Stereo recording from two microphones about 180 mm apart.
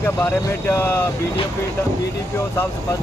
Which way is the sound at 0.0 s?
10° left (ahead or behind).